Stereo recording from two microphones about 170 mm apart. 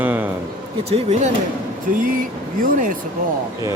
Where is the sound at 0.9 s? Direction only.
40° right (ahead or behind).